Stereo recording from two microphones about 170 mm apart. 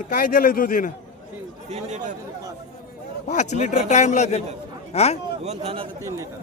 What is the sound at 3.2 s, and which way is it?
A man's voice, 45° left (ahead or behind).